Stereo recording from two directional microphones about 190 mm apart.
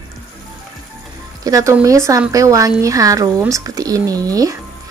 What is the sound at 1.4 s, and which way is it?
Speech, 15° right (ahead or behind).